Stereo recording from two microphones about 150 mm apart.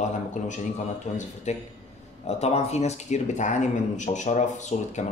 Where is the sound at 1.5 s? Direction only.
50° left (ahead or behind).